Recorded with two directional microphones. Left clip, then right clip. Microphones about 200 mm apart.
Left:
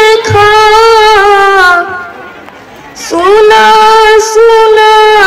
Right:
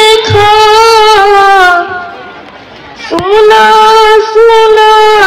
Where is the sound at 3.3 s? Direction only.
20° right (ahead or behind).